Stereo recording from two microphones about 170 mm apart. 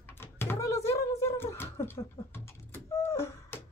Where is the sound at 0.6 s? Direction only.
15° left (ahead or behind).